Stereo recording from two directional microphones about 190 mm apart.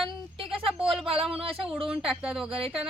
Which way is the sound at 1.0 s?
30° right (ahead or behind).